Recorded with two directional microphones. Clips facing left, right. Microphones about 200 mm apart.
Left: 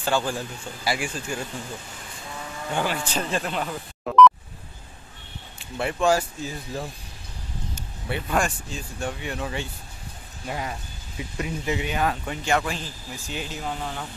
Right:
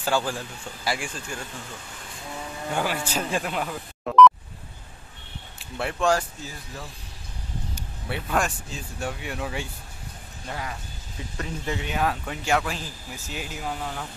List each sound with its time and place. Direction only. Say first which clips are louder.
0.0 s speech: left 1 dB; 5° right (ahead or behind)
0.8 s speech: left 3 dB; 5° left (ahead or behind)
2.7 s speech: left 1 dB; 5° right (ahead or behind)
5.6 s speech: left 2 dB; centre (ahead or behind)
8.1 s speech: left 1 dB; centre (ahead or behind)
10.4 s speech: left 3 dB; 20° left (ahead or behind); by 14.0 s 5° right (ahead or behind)